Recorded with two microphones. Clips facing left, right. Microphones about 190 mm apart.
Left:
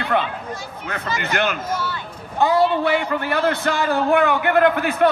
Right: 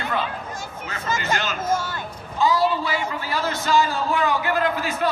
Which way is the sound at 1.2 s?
60° left (ahead or behind).